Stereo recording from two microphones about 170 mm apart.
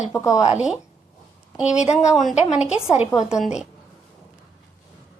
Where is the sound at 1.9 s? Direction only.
Centre (ahead or behind).